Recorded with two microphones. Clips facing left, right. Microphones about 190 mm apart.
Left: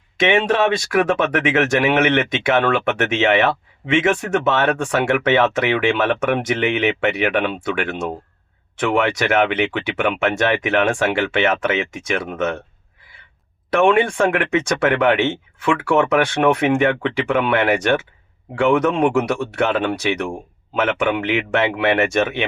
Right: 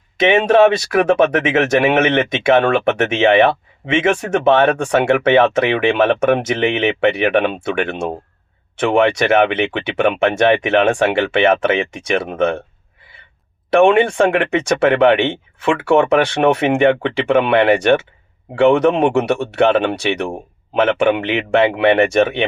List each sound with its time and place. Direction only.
0.9 s speech: 25° right (ahead or behind)
13.7 s speech: 25° right (ahead or behind)